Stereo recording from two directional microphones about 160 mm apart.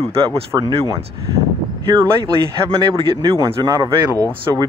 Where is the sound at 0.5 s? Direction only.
25° right (ahead or behind).